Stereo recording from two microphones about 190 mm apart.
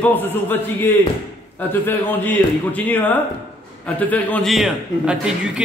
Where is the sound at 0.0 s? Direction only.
10° left (ahead or behind).